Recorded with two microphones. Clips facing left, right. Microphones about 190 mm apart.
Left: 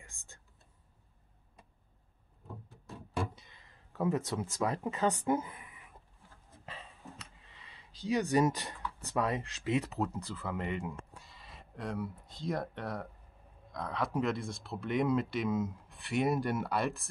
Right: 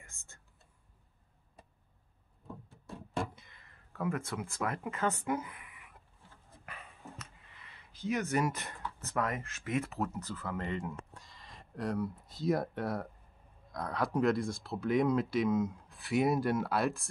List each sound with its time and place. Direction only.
0.0 s whispering: 15° left (ahead or behind)
3.2 s a sound: 15° left (ahead or behind)
4.4 s speech: 20° left (ahead or behind)
8.1 s speech: 15° left (ahead or behind)